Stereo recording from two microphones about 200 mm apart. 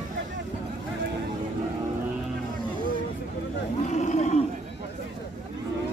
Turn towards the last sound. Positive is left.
turn(degrees=35)  # may be behind; listen again after turning